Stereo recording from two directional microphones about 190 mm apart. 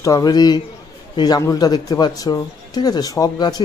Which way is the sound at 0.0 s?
20° left (ahead or behind).